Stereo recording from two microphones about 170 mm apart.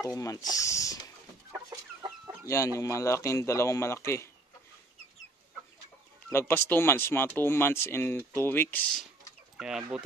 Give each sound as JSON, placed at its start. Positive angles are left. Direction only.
{"t": 0.1, "sound": "speech", "side_deg": 20}
{"t": 2.4, "sound": "speech", "side_deg": 15}
{"t": 6.3, "sound": "speech", "side_deg": 15}
{"t": 9.6, "sound": "speech", "side_deg": -5}